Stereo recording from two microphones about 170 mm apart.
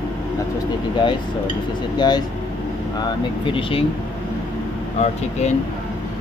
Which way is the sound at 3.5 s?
30° left (ahead or behind).